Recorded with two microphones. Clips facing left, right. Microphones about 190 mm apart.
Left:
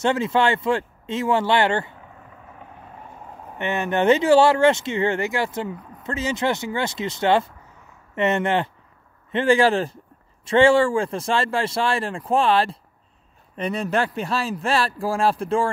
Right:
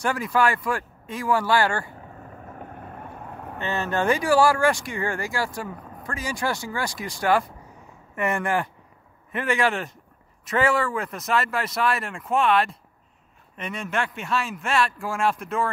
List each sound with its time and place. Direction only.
0.0 s speech: 25° left (ahead or behind)
2.2 s vehicle: 45° right (ahead or behind); by 3.5 s 65° right (ahead or behind)
3.5 s a man's voice: 15° left (ahead or behind)